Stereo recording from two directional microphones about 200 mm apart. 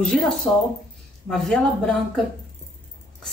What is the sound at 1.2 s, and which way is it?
Speech, centre (ahead or behind).